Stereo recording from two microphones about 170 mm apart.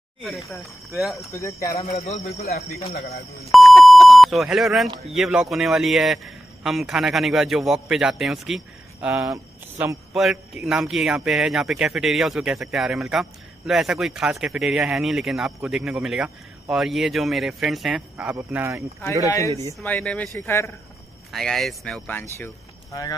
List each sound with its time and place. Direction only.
0.2 s speech: centre (ahead or behind)
1.3 s speech: 20° left (ahead or behind)
3.5 s speech: centre (ahead or behind)
10.1 s speech: 5° right (ahead or behind)
19.2 s speech: 20° left (ahead or behind)
21.3 s speech: centre (ahead or behind)